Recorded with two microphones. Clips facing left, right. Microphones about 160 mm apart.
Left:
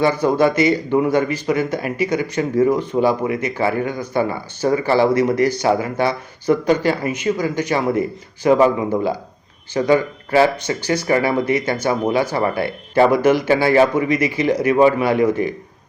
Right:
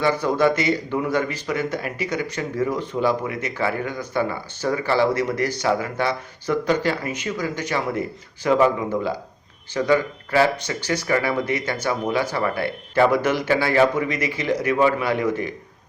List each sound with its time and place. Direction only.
0.0 s speech: 15° left (ahead or behind)
9.7 s speech: 15° left (ahead or behind)